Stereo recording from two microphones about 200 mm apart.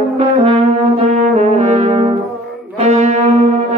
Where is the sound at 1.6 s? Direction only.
35° right (ahead or behind).